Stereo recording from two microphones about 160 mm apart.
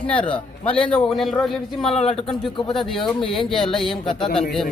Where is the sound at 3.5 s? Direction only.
Centre (ahead or behind).